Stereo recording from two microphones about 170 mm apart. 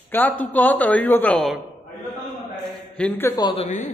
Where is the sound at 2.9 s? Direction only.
10° left (ahead or behind).